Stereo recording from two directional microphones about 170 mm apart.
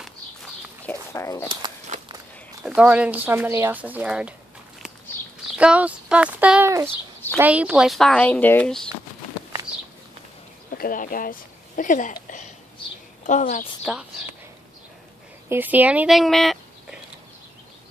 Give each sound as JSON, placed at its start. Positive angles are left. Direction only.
{"t": 0.8, "sound": "bird", "side_deg": 15}
{"t": 1.9, "sound": "walk", "side_deg": -45}
{"t": 2.6, "sound": "speech", "side_deg": -5}
{"t": 5.6, "sound": "speech", "side_deg": -5}
{"t": 10.8, "sound": "speech", "side_deg": 55}
{"t": 15.4, "sound": "speech", "side_deg": -10}